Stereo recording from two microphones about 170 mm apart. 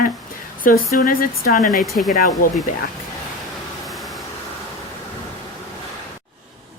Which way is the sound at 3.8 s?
Centre (ahead or behind).